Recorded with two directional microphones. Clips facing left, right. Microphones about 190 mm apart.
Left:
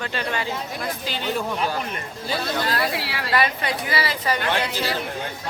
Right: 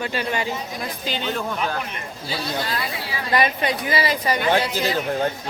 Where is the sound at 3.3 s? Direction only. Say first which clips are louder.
Right 2 dB; 20° right (ahead or behind).